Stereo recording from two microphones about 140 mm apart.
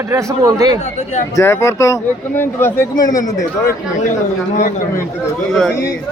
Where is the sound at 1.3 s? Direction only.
20° left (ahead or behind).